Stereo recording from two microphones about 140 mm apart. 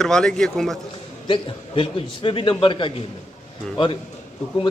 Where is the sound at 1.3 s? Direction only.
40° left (ahead or behind).